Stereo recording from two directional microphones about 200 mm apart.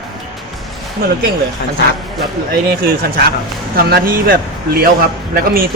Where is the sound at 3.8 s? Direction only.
50° right (ahead or behind).